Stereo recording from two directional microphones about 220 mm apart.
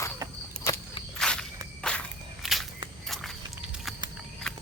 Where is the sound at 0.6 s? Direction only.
15° left (ahead or behind).